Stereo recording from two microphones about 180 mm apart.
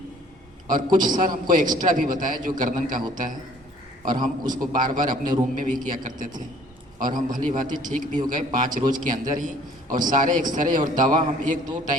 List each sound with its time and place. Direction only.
0.7 s a man's voice: 45° right (ahead or behind)
4.0 s a man's voice: 45° right (ahead or behind)